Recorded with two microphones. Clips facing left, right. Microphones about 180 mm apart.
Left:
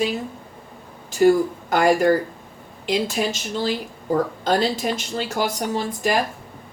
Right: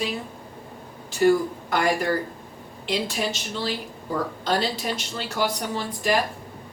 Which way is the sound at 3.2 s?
60° left (ahead or behind).